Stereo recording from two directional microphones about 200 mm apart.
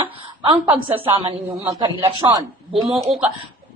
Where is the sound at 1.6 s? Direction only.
15° right (ahead or behind).